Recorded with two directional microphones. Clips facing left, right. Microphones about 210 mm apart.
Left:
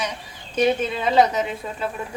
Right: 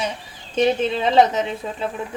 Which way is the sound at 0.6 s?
25° right (ahead or behind).